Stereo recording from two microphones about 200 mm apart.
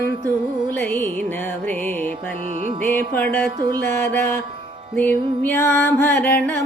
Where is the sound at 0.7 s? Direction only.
10° left (ahead or behind).